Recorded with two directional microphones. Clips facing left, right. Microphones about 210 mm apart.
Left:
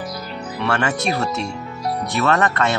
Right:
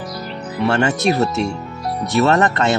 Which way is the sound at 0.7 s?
25° right (ahead or behind).